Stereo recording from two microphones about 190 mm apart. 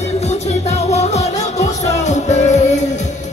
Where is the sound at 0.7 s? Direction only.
35° left (ahead or behind).